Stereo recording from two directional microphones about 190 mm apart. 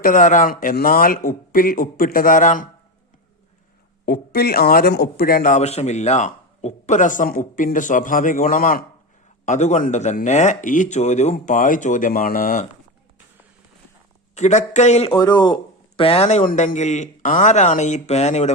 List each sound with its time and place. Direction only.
0.0 s speech: 45° left (ahead or behind)
4.0 s speech: 50° left (ahead or behind)
14.3 s speech: 40° left (ahead or behind)
15.1 s speech: 20° left (ahead or behind)